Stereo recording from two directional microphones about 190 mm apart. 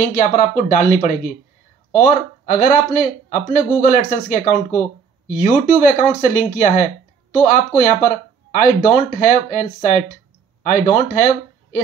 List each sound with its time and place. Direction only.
0.0 s speech: 45° left (ahead or behind)